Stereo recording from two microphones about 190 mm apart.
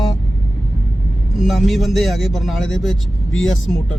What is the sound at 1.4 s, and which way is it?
A man's voice, centre (ahead or behind).